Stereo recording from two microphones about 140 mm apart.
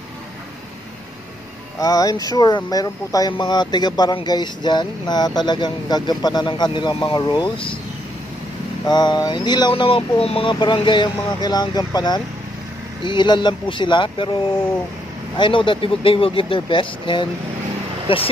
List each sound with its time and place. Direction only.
1.8 s speech: 25° left (ahead or behind)
8.8 s speech: 30° left (ahead or behind)
15.3 s speech: 35° left (ahead or behind)